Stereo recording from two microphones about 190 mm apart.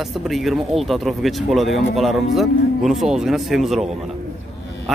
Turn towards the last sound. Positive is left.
turn(degrees=0)  # may be behind; listen again after turning